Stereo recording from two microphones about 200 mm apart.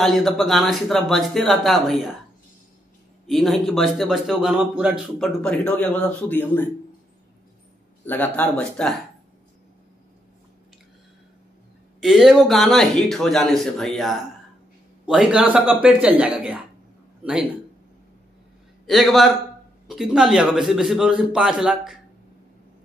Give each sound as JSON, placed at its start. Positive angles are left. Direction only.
{"t": 0.0, "sound": "a man's voice", "side_deg": 0}
{"t": 3.3, "sound": "a man's voice", "side_deg": 0}
{"t": 8.0, "sound": "speech", "side_deg": 10}
{"t": 12.0, "sound": "a man's voice", "side_deg": 0}
{"t": 18.9, "sound": "a man's voice", "side_deg": 0}